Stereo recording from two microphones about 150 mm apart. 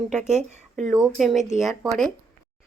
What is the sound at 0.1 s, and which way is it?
Speech, 50° right (ahead or behind).